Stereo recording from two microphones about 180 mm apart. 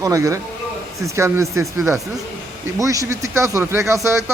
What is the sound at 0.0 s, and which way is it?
Speech, 15° right (ahead or behind).